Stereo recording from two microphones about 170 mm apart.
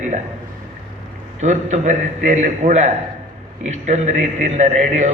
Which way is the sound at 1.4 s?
45° right (ahead or behind).